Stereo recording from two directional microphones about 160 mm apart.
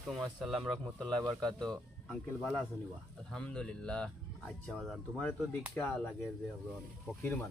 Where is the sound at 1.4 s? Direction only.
25° right (ahead or behind).